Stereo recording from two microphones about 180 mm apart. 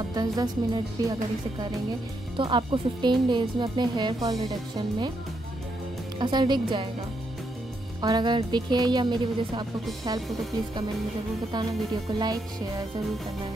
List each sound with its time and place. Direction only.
0.1 s speech: 20° right (ahead or behind)
2.3 s speech: 30° right (ahead or behind)
6.1 s speech: 25° right (ahead or behind)
8.0 s speech: 25° right (ahead or behind)
11.5 s speech: 25° right (ahead or behind)